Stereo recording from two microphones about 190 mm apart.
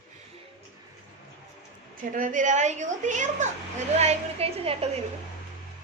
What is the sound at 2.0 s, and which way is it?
A woman's voice, 45° right (ahead or behind).